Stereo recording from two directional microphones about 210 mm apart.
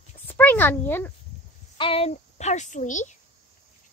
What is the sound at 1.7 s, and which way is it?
A woman's voice, 25° left (ahead or behind).